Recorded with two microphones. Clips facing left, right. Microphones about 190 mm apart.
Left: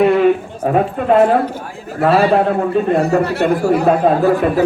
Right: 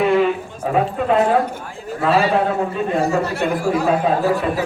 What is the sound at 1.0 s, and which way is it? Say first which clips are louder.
Speech: left 5 dB; 55° left (ahead or behind).